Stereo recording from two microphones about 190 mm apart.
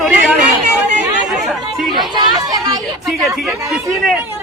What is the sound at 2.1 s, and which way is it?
Speech, 20° right (ahead or behind).